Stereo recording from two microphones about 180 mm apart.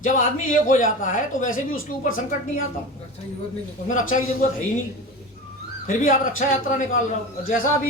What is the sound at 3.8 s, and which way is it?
Speech, 45° left (ahead or behind).